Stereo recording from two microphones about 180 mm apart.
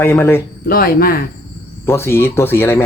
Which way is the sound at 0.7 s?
55° left (ahead or behind).